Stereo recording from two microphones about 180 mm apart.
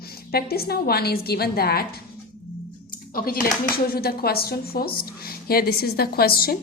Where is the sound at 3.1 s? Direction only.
55° left (ahead or behind).